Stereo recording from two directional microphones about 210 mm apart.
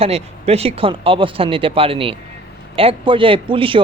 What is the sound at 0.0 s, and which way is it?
Speech, 30° right (ahead or behind).